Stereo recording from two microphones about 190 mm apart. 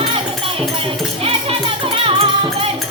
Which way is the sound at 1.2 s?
30° right (ahead or behind).